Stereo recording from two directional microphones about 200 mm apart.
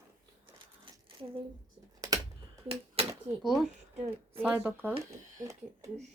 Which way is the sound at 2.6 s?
30° right (ahead or behind).